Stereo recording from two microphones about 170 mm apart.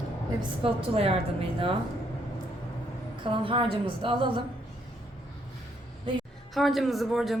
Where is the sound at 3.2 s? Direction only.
30° right (ahead or behind).